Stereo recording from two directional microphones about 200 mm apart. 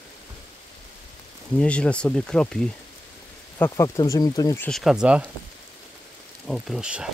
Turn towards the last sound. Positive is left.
turn(degrees=-5)  # may be behind; listen again after turning